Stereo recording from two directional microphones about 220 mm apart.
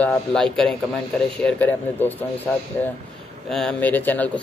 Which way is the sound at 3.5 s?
5° left (ahead or behind).